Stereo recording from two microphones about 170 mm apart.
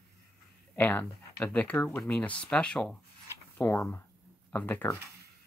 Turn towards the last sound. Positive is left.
turn(degrees=10)  # may be behind; listen again after turning